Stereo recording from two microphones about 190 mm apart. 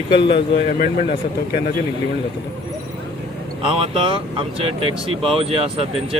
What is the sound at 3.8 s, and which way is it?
Speech, 30° right (ahead or behind).